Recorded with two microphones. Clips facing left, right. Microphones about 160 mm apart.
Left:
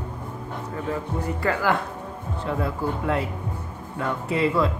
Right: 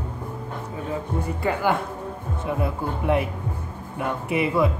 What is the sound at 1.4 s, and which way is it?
A man's voice, 20° right (ahead or behind).